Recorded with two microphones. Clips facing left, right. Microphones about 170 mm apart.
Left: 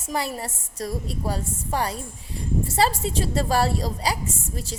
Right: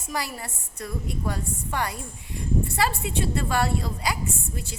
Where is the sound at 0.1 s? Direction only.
25° left (ahead or behind).